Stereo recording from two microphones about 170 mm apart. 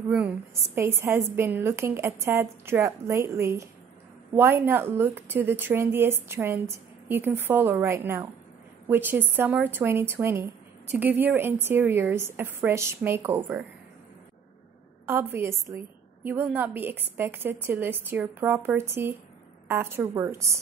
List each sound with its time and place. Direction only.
0.7 s a woman's voice: 15° right (ahead or behind)
15.0 s a woman's voice: 15° right (ahead or behind)